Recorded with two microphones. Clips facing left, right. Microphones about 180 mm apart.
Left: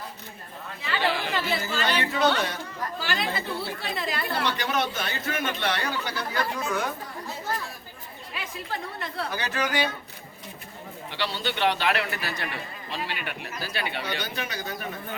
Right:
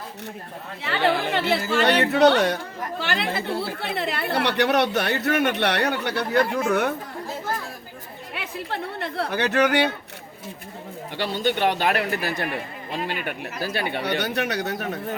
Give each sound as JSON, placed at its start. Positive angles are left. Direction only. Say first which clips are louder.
{"t": 0.8, "sound": "speech", "louder": "right 5 dB", "side_deg": -65}
{"t": 8.3, "sound": "speech", "louder": "right 4 dB", "side_deg": -65}
{"t": 11.2, "sound": "a man's voice", "louder": "right 4 dB", "side_deg": -50}